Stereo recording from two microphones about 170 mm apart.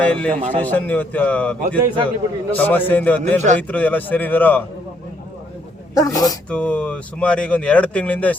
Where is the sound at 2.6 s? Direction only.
10° left (ahead or behind).